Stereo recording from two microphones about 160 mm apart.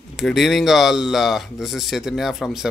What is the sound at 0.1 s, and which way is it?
Speech, centre (ahead or behind).